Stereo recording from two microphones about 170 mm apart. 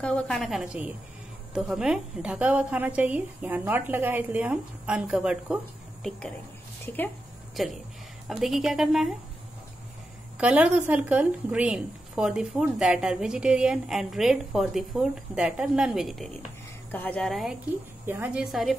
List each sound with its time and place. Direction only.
0.0 s a woman's voice: 5° left (ahead or behind)
7.5 s a woman's voice: centre (ahead or behind)
10.3 s a woman's voice: 5° right (ahead or behind)